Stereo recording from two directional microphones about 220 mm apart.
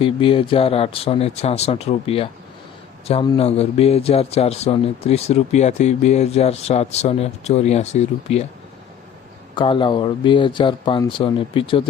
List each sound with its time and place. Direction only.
0.0 s a man's voice: 25° left (ahead or behind)
9.6 s a man's voice: 20° left (ahead or behind)